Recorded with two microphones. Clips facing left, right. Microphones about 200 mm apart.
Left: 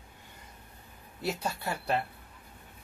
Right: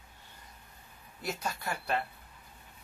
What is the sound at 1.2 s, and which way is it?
Speech, 30° left (ahead or behind).